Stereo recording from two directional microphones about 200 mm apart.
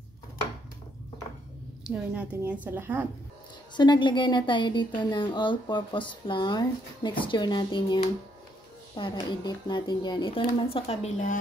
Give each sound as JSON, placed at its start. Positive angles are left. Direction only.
{"t": 1.9, "sound": "a woman's voice", "side_deg": -5}
{"t": 3.7, "sound": "a woman's voice", "side_deg": 20}